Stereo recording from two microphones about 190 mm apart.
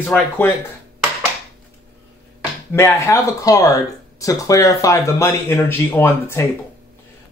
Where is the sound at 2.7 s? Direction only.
15° left (ahead or behind).